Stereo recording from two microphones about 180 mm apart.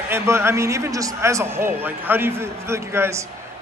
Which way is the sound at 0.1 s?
15° right (ahead or behind).